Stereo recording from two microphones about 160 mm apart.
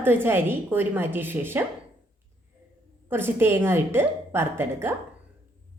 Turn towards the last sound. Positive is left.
turn(degrees=-15)  # may be behind; listen again after turning